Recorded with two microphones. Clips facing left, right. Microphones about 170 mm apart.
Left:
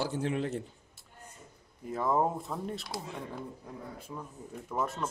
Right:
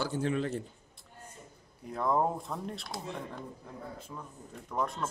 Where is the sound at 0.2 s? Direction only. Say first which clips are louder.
Right 4 dB; 25° left (ahead or behind).